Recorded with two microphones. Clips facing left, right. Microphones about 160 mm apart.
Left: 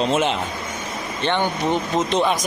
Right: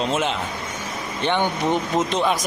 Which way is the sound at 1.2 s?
15° right (ahead or behind).